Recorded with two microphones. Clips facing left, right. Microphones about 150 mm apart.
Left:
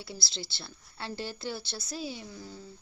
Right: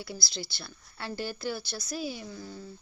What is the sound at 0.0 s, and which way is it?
Speech, 25° left (ahead or behind).